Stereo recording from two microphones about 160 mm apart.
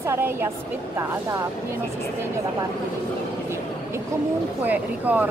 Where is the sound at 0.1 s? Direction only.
15° right (ahead or behind).